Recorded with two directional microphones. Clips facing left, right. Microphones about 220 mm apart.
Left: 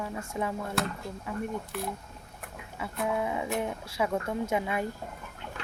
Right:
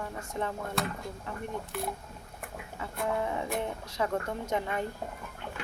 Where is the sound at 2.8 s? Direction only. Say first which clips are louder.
Left 1 dB; 10° left (ahead or behind).